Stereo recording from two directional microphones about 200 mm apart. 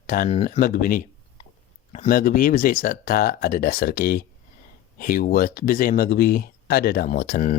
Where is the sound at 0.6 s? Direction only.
45° left (ahead or behind).